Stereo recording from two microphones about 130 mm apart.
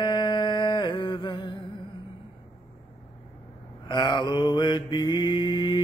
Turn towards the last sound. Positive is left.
turn(degrees=35)  # may be behind; listen again after turning